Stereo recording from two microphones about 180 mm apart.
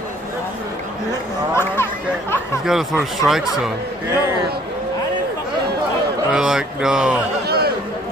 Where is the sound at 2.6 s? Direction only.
Centre (ahead or behind).